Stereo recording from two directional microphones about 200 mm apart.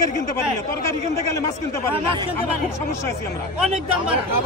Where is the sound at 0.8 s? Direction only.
15° left (ahead or behind).